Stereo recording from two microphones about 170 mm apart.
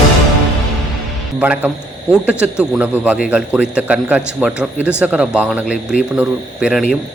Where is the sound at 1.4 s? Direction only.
10° right (ahead or behind).